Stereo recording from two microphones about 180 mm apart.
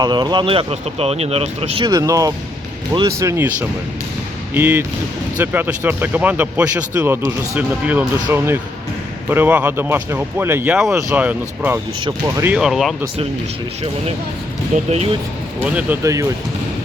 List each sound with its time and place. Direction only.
0.0 s speech: 25° right (ahead or behind)
1.9 s speech: 20° right (ahead or behind)
12.0 s speech: 20° right (ahead or behind)
12.5 s speech: 5° right (ahead or behind)
14.8 s speech: 35° right (ahead or behind)
15.6 s speech: 10° right (ahead or behind)